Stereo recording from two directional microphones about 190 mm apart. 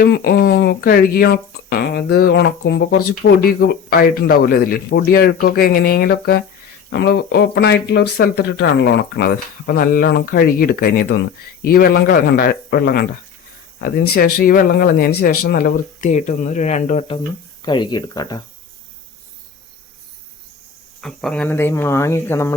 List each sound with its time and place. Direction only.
0.0 s speech: 55° left (ahead or behind); by 17.2 s 35° left (ahead or behind)
17.7 s speech: 25° left (ahead or behind)
21.0 s speech: centre (ahead or behind)